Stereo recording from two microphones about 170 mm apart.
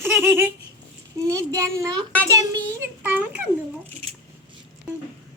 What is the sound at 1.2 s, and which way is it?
Speech, 20° right (ahead or behind).